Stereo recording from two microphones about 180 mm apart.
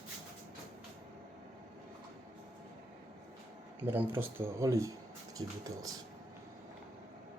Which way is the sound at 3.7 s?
10° right (ahead or behind).